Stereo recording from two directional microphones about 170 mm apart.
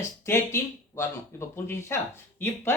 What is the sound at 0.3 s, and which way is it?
Speech, 15° left (ahead or behind).